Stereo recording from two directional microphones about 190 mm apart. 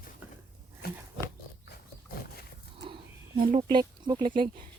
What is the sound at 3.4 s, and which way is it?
Speech, 25° right (ahead or behind).